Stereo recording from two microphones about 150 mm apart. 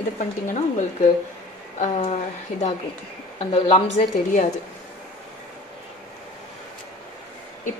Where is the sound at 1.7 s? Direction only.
45° left (ahead or behind).